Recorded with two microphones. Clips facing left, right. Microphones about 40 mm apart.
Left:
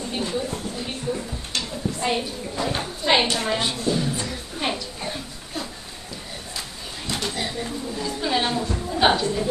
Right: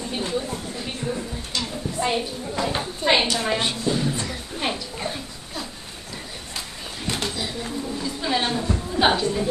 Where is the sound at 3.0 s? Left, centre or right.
Right.